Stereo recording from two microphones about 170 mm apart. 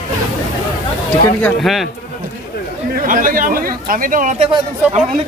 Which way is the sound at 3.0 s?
55° right (ahead or behind).